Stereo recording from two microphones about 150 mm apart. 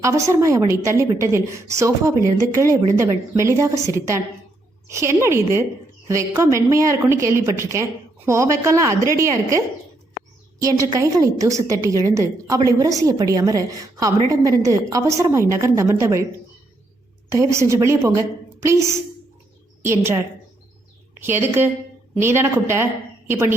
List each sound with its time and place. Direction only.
0.0 s a woman's voice: 20° right (ahead or behind)
17.3 s a woman's voice: 20° right (ahead or behind)